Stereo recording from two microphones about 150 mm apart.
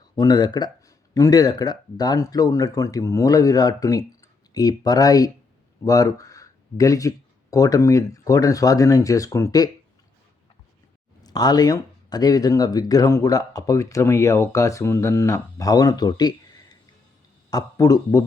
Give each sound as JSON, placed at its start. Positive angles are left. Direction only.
{"t": 0.2, "sound": "speech", "side_deg": 25}
{"t": 11.2, "sound": "speech", "side_deg": 25}